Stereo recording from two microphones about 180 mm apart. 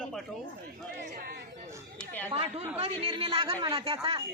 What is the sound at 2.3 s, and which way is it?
Speech, 30° right (ahead or behind).